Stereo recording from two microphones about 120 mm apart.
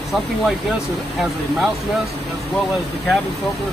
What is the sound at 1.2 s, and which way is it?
Speech, centre (ahead or behind).